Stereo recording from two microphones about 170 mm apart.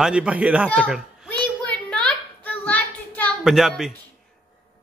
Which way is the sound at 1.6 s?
5° left (ahead or behind).